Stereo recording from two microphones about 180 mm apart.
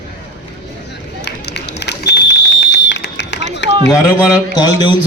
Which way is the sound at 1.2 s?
70° left (ahead or behind).